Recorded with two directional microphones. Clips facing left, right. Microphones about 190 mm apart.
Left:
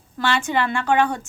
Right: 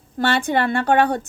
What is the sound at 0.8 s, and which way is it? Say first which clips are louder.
Speech: right 2 dB; 55° right (ahead or behind).